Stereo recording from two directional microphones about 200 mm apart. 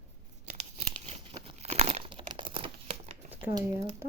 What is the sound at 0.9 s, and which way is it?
Crumpling, 30° right (ahead or behind).